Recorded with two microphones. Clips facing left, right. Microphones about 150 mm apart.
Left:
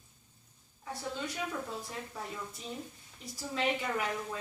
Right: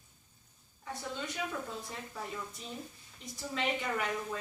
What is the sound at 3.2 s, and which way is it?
Speech, centre (ahead or behind).